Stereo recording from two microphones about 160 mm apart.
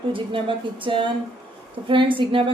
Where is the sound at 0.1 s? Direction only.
30° right (ahead or behind).